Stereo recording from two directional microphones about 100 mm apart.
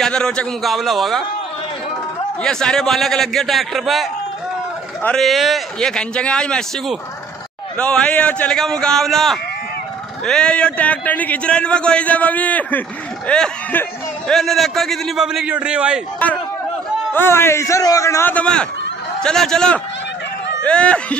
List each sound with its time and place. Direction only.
0.0 s a man's voice: 5° left (ahead or behind)
2.4 s a man's voice: 5° left (ahead or behind)
7.7 s a man's voice: 15° left (ahead or behind); by 16.0 s 10° right (ahead or behind)
17.1 s a man's voice: 20° left (ahead or behind)
18.3 s a man's voice: 10° left (ahead or behind)